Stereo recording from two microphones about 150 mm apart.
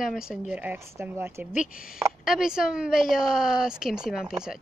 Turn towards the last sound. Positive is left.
turn(degrees=-5)  # may be behind; listen again after turning